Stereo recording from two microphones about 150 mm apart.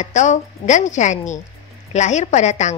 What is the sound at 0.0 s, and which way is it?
A woman's voice, 55° left (ahead or behind).